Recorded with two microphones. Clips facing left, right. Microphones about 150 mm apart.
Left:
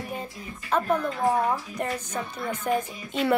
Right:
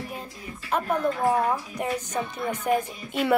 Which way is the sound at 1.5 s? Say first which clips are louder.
Right 1 dB; 5° right (ahead or behind).